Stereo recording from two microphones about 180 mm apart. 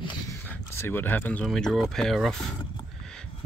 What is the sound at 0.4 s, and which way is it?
Speech, 10° left (ahead or behind).